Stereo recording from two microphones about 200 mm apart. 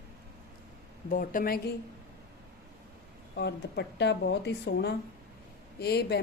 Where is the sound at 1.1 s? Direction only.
45° left (ahead or behind).